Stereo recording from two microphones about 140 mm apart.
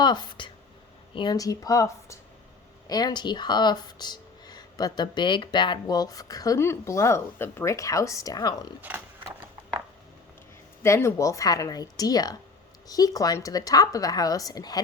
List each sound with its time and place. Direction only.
0.0 s a woman's voice: 30° left (ahead or behind)
10.8 s speech: 20° left (ahead or behind)